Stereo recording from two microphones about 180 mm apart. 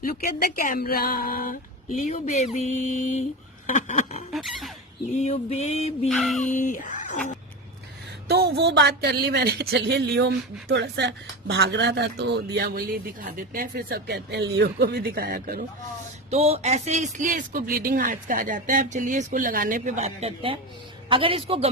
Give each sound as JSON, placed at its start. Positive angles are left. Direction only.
{"t": 0.0, "sound": "speech", "side_deg": 55}
{"t": 3.7, "sound": "a sound", "side_deg": 45}
{"t": 4.3, "sound": "squeal", "side_deg": 0}
{"t": 5.1, "sound": "mantra", "side_deg": 40}
{"t": 6.1, "sound": "music", "side_deg": 0}
{"t": 6.4, "sound": "speech", "side_deg": 45}
{"t": 8.3, "sound": "speech", "side_deg": -65}
{"t": 16.3, "sound": "a man's voice", "side_deg": -35}